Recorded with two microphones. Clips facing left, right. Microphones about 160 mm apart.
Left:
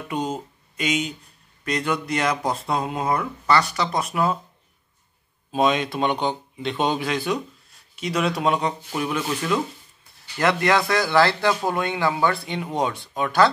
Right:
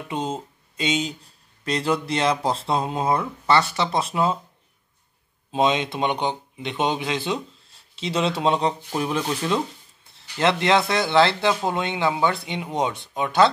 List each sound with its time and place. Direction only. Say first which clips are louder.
0.1 s speech: left 1 dB; 25° right (ahead or behind)
5.5 s speech: even; 20° right (ahead or behind)